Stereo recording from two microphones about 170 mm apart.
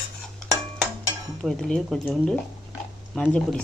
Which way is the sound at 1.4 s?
5° left (ahead or behind).